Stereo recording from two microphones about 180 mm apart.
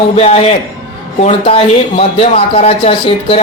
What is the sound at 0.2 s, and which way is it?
Speech, 35° left (ahead or behind).